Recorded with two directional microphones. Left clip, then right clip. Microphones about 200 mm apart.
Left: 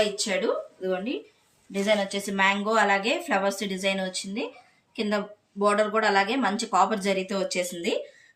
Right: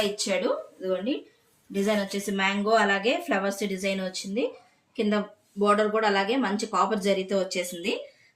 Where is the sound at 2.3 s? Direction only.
60° left (ahead or behind).